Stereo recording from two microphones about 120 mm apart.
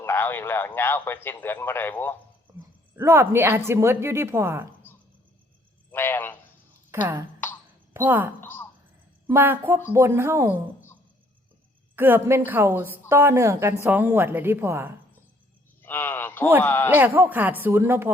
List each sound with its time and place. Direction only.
0.0 s a man's voice: 20° left (ahead or behind)
2.9 s a woman's voice: 25° right (ahead or behind)
5.9 s a man's voice: 15° left (ahead or behind)
6.9 s a woman's voice: 20° right (ahead or behind)
8.4 s a woman's voice: 15° left (ahead or behind)
9.2 s a woman's voice: 20° right (ahead or behind)
11.9 s a woman's voice: 15° right (ahead or behind)
15.8 s a sound: 20° left (ahead or behind)
16.6 s a man's voice: 20° left (ahead or behind)
16.9 s speech: 15° right (ahead or behind)